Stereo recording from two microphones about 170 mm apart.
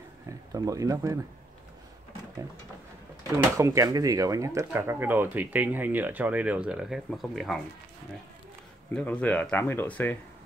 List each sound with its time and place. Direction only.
0.3 s speech: 20° right (ahead or behind)
3.5 s speech: 20° right (ahead or behind); by 7.6 s centre (ahead or behind)
8.9 s speech: 10° left (ahead or behind)